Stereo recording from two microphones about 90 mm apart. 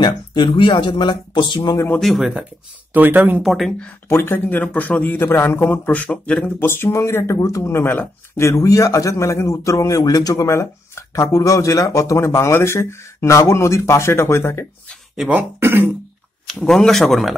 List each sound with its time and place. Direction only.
0.0 s speech: 65° left (ahead or behind)
2.0 s a man's voice: centre (ahead or behind)
2.9 s speech: 20° right (ahead or behind)
3.4 s a man's voice: centre (ahead or behind)
4.1 s speech: 25° left (ahead or behind); by 6.5 s 10° left (ahead or behind)
6.6 s speech: 25° left (ahead or behind)
8.5 s speech: 35° left (ahead or behind)
15.3 s speech: 20° right (ahead or behind)
16.6 s a man's voice: 5° left (ahead or behind)